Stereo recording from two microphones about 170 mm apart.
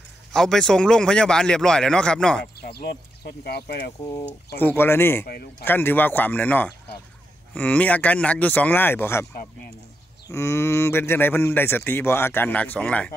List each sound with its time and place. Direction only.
0.3 s speech: centre (ahead or behind)
2.6 s speech: 65° left (ahead or behind)
4.6 s speech: 10° left (ahead or behind)
5.2 s speech: 60° left (ahead or behind)
5.7 s speech: 10° left (ahead or behind)